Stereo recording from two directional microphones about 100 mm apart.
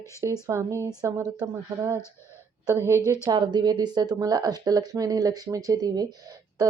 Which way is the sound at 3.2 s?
45° right (ahead or behind).